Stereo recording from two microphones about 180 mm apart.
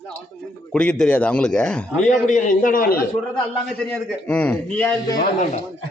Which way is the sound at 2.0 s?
45° left (ahead or behind).